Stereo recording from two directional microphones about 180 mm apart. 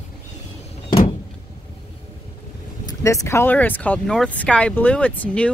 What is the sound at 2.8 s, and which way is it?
Speech, 15° left (ahead or behind).